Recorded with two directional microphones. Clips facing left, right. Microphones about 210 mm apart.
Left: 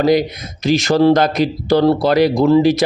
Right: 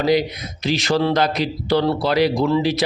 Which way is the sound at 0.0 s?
45° left (ahead or behind).